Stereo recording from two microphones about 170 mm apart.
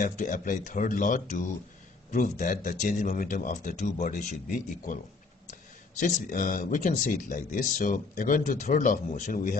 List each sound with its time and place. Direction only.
0.0 s speech: 50° left (ahead or behind)
5.9 s speech: 50° left (ahead or behind)